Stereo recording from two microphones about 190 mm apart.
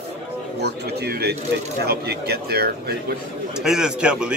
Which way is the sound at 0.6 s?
60° right (ahead or behind).